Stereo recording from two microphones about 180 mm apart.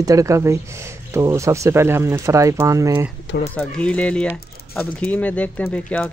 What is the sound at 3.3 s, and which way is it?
Speech, 90° left.